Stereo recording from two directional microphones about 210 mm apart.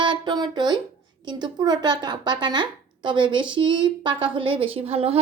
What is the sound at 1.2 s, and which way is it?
A woman's voice, 20° right (ahead or behind).